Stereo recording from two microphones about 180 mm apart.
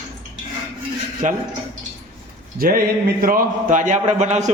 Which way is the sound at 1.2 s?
45° right (ahead or behind).